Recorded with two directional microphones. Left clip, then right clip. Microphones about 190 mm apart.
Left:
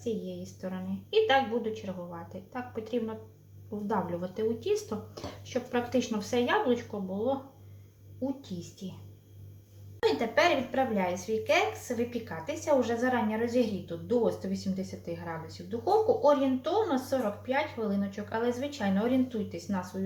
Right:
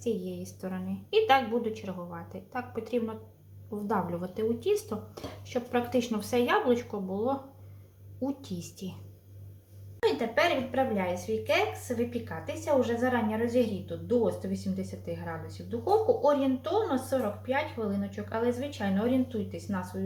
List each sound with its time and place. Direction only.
0.0 s a woman's voice: 20° right (ahead or behind)
8.2 s a woman's voice: 25° right (ahead or behind)
10.0 s a woman's voice: 5° right (ahead or behind)